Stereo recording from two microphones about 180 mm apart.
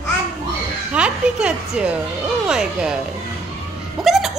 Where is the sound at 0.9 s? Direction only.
5° right (ahead or behind).